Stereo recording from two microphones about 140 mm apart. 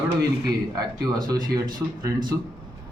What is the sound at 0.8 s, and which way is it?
Speech, 25° right (ahead or behind).